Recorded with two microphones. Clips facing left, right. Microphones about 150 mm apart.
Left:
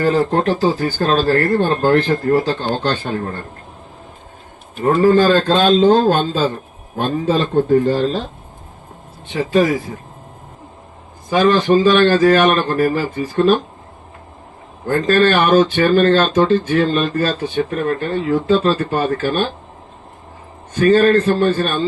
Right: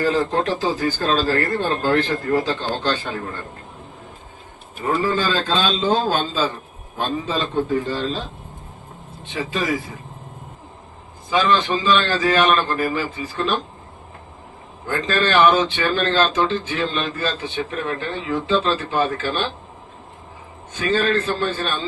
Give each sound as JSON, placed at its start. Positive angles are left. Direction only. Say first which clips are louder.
{"t": 0.0, "sound": "speech", "louder": "left 4 dB", "side_deg": 50}
{"t": 4.8, "sound": "speech", "louder": "left 9 dB", "side_deg": 55}
{"t": 9.3, "sound": "speech", "louder": "left 10 dB", "side_deg": 50}
{"t": 11.3, "sound": "speech", "louder": "left 6 dB", "side_deg": 45}
{"t": 14.8, "sound": "speech", "louder": "left 7 dB", "side_deg": 50}
{"t": 20.7, "sound": "speech", "louder": "left 8 dB", "side_deg": 50}